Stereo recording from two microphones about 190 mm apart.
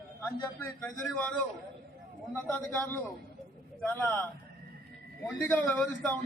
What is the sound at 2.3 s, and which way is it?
A man's voice, 10° left (ahead or behind).